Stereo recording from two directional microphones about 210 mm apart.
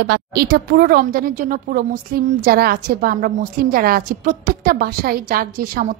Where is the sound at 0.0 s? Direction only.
50° right (ahead or behind).